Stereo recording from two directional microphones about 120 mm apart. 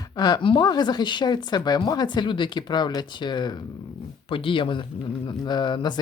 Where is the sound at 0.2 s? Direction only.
35° left (ahead or behind).